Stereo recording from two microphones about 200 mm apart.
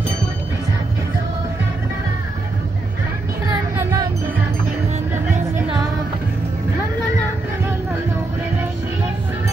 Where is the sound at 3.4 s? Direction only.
15° right (ahead or behind).